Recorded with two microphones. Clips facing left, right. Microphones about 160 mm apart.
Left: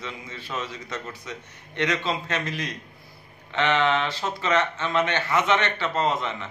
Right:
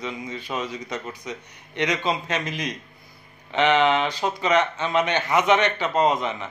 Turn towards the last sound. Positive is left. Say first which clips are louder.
# right 4 dB
turn(degrees=-15)  # may be behind; listen again after turning